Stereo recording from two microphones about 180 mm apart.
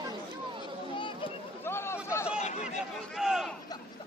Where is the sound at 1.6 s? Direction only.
15° left (ahead or behind).